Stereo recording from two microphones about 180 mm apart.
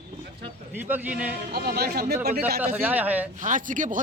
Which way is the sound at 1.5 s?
60° right (ahead or behind).